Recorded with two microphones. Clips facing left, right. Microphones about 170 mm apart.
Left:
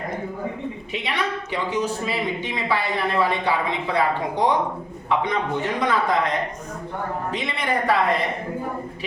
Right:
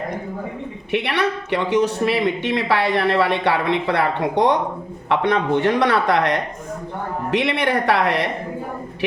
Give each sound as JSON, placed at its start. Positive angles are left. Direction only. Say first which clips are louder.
{"t": 0.9, "sound": "a woman's voice", "louder": "right 7 dB", "side_deg": -65}